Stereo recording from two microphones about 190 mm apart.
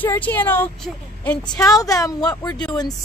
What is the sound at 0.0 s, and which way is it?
A woman's voice, 10° left (ahead or behind).